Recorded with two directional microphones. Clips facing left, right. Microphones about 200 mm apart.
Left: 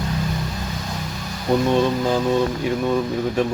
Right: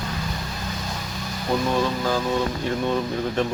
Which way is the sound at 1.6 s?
20° left (ahead or behind).